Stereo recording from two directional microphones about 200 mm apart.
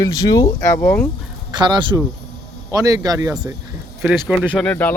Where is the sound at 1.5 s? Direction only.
20° right (ahead or behind).